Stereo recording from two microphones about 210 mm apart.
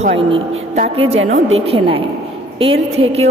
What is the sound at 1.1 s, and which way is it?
Speech, 65° right (ahead or behind).